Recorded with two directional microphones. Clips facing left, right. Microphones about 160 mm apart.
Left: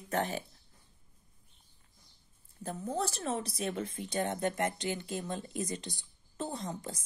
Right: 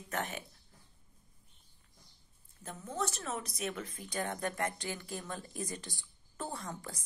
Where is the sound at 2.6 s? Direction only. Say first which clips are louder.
Left 4 dB; 35° left (ahead or behind).